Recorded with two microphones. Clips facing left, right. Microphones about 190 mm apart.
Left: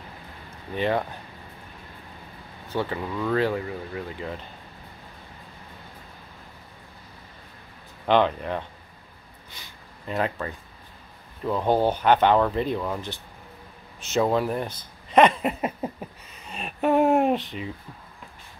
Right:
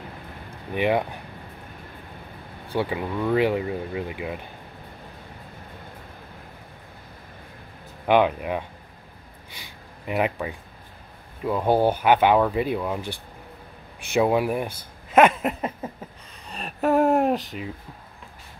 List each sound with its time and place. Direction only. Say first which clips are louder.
0.7 s speech: right 2 dB; 15° right (ahead or behind)
2.7 s speech: right 2 dB; 15° right (ahead or behind)
8.1 s speech: right 2 dB; 10° right (ahead or behind)
10.0 s speech: right 2 dB; 15° right (ahead or behind)